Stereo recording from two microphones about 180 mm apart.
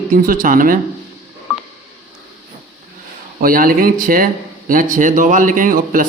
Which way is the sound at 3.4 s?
50° right (ahead or behind).